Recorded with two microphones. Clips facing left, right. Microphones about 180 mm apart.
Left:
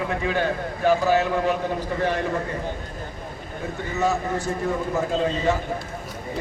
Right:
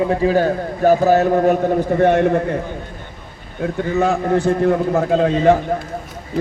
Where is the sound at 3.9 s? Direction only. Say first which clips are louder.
Right 7 dB; 55° right (ahead or behind).